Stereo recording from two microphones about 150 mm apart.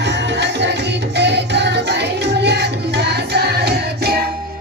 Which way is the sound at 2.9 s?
90° right.